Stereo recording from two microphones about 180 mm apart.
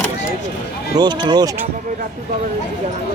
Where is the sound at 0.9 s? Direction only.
25° right (ahead or behind).